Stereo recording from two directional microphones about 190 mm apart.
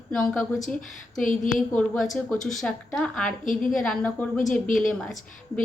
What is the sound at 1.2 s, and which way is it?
Speech, 45° left (ahead or behind).